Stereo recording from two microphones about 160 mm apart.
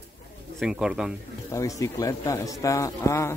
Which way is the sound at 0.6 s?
5° right (ahead or behind).